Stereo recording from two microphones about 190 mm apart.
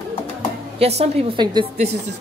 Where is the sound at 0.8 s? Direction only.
35° right (ahead or behind).